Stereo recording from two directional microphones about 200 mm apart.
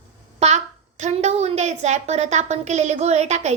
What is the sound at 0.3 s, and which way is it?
A woman's voice, 35° right (ahead or behind).